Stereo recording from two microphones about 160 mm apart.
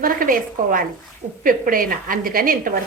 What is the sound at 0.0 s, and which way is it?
A woman's voice, 60° right (ahead or behind).